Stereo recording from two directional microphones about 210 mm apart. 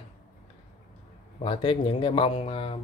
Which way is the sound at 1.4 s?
25° left (ahead or behind).